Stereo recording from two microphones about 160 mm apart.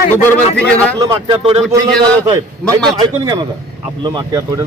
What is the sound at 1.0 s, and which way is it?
Speech, 20° right (ahead or behind).